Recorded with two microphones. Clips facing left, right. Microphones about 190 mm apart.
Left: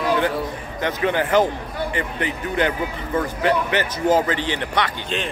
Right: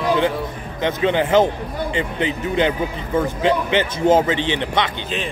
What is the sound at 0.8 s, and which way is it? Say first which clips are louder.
A man's voice: right 3 dB; 20° right (ahead or behind).